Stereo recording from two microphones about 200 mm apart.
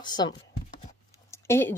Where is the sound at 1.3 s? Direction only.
15° left (ahead or behind).